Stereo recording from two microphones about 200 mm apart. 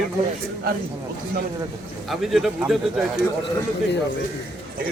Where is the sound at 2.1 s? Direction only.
Centre (ahead or behind).